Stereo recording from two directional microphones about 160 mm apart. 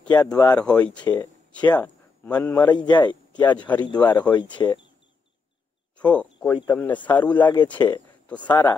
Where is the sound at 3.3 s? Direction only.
10° left (ahead or behind).